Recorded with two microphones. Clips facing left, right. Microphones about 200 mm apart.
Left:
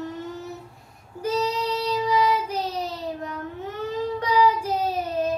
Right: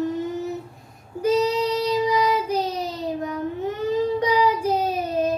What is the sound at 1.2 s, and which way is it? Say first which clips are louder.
Child singing: right 5 dB; 15° right (ahead or behind).